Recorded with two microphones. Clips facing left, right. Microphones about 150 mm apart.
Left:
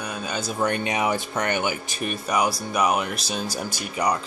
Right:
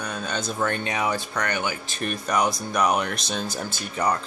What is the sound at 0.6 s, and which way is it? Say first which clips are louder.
Speech: left 3 dB; 15° left (ahead or behind).